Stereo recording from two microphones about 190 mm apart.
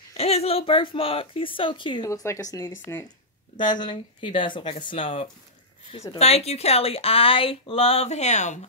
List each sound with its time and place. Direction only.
0.2 s speech: 35° left (ahead or behind); by 3.1 s 10° left (ahead or behind)
3.5 s speech: 25° left (ahead or behind)